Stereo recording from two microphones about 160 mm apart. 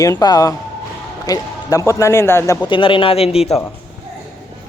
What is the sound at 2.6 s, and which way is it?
Speech, 30° left (ahead or behind).